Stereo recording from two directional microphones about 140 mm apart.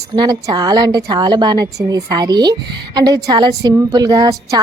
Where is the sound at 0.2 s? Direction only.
30° right (ahead or behind).